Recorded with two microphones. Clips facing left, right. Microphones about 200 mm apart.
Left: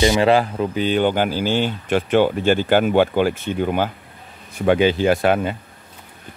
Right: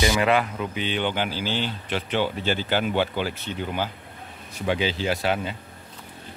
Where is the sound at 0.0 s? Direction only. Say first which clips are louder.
Left 6 dB; 30° left (ahead or behind).